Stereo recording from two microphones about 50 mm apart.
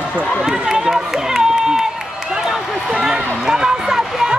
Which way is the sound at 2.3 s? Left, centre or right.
Centre.